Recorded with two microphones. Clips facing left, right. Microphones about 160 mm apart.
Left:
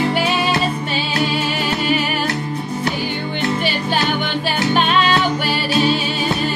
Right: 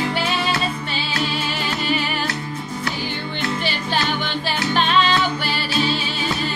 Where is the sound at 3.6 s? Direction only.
15° left (ahead or behind).